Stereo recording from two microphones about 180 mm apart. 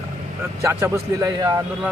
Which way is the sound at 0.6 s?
15° right (ahead or behind).